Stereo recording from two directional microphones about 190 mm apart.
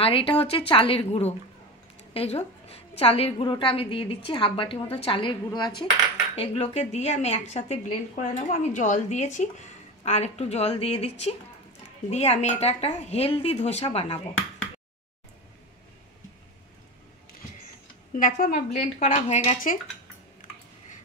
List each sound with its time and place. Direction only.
0.0 s a woman's voice: 30° left (ahead or behind)
18.1 s a woman's voice: 45° left (ahead or behind)
19.1 s a woman's voice: 35° left (ahead or behind)